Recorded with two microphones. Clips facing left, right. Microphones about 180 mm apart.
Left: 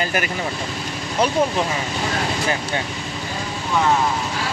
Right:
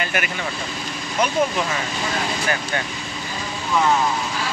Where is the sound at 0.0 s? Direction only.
35° left (ahead or behind).